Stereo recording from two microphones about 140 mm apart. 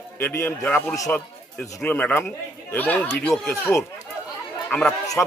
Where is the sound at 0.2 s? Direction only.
15° left (ahead or behind).